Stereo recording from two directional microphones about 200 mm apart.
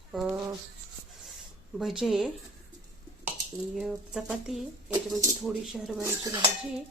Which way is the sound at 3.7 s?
5° right (ahead or behind).